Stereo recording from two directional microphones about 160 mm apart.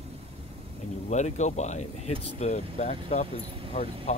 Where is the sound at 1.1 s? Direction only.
45° left (ahead or behind).